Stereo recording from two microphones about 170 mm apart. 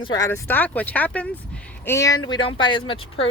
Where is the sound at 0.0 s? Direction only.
20° left (ahead or behind).